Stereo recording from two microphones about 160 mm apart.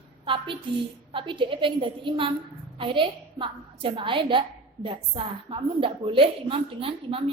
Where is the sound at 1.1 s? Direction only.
30° right (ahead or behind).